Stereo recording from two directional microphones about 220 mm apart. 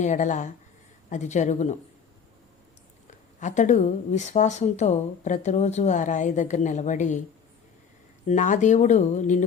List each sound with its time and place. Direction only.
0.0 s a woman's voice: 35° left (ahead or behind)
3.4 s a woman's voice: 35° left (ahead or behind)
8.3 s a woman's voice: 35° left (ahead or behind)